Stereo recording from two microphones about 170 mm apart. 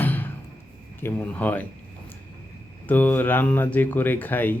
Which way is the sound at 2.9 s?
10° left (ahead or behind).